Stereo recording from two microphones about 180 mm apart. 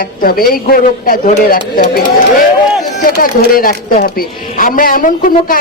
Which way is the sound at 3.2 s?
50° left (ahead or behind).